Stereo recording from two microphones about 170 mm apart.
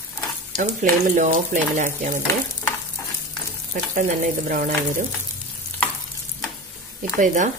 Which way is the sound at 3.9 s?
50° right (ahead or behind).